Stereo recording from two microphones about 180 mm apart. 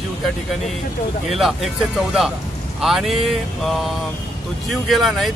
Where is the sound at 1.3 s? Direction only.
Centre (ahead or behind).